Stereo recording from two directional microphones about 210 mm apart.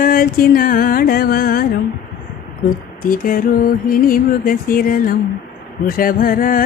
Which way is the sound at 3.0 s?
40° left (ahead or behind).